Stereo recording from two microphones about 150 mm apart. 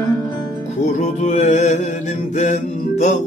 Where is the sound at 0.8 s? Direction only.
55° left (ahead or behind).